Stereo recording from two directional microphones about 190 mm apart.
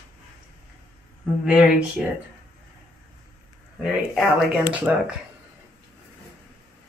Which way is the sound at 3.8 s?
Centre (ahead or behind).